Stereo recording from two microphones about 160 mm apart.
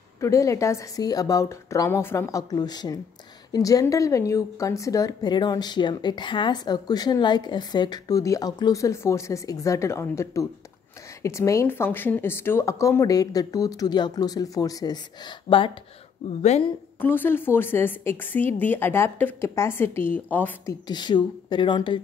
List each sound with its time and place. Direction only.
0.2 s a woman's voice: 20° left (ahead or behind)
16.3 s speech: 45° left (ahead or behind)
17.0 s speech: 10° left (ahead or behind)
20.8 s a woman's voice: 25° left (ahead or behind)